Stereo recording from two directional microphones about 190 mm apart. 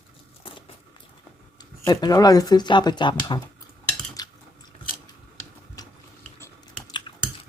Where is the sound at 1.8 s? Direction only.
20° left (ahead or behind).